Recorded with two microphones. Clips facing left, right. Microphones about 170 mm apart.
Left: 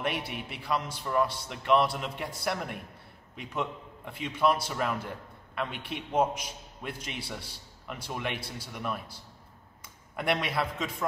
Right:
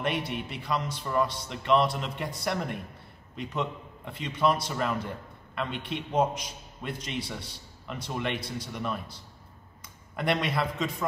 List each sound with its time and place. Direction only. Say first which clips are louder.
0.0 s a man's voice: right 3 dB; 5° left (ahead or behind)
10.1 s a man's voice: right 1 dB; 5° left (ahead or behind)